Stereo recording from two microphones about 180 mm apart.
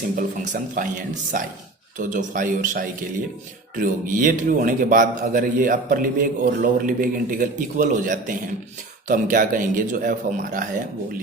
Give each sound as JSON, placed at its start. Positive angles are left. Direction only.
{"t": 0.2, "sound": "a man's voice", "side_deg": -45}